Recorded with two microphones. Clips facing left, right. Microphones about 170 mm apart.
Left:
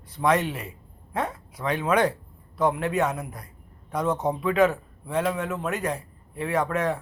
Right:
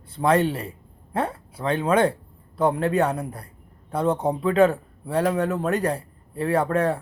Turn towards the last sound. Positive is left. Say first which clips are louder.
# right 4 dB
turn(degrees=-30)  # may be behind; listen again after turning